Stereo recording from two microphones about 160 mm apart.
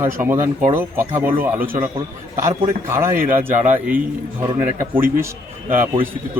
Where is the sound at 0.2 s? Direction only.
15° right (ahead or behind).